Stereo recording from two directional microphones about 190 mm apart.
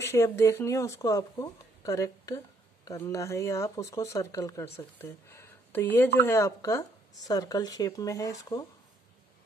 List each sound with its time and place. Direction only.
0.0 s speech: 15° left (ahead or behind)